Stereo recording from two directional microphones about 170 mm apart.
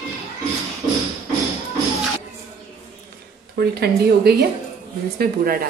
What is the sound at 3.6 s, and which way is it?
Speech, 70° right (ahead or behind).